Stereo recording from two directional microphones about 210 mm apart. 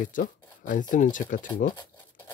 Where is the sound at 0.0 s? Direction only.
40° left (ahead or behind).